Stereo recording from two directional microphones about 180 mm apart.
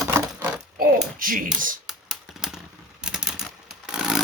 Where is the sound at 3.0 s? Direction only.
5° right (ahead or behind).